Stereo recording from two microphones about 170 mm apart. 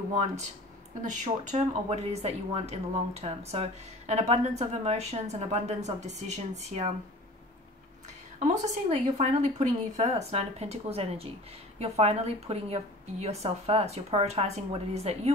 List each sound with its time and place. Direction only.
1.0 s a woman's voice: 45° right (ahead or behind)
8.4 s a woman's voice: 40° right (ahead or behind)